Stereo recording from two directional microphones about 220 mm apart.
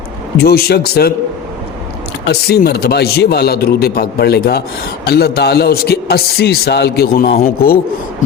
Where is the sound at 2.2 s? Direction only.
45° left (ahead or behind).